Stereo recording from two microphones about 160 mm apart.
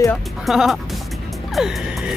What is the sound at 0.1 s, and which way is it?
Speech, centre (ahead or behind).